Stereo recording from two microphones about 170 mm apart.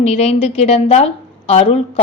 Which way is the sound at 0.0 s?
40° left (ahead or behind).